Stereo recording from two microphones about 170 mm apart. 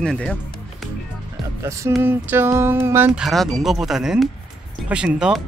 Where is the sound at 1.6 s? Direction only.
15° right (ahead or behind).